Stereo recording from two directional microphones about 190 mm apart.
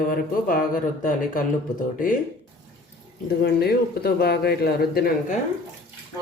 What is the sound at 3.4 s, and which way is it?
Speech, 55° left (ahead or behind).